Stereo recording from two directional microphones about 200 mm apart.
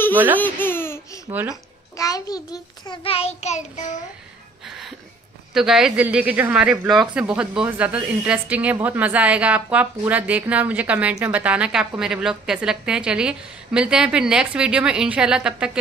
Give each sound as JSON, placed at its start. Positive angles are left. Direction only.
{"t": 0.4, "sound": "babbling", "side_deg": 10}
{"t": 1.3, "sound": "speech", "side_deg": -10}
{"t": 2.0, "sound": "a child's voice", "side_deg": 15}
{"t": 5.5, "sound": "a woman's voice", "side_deg": 0}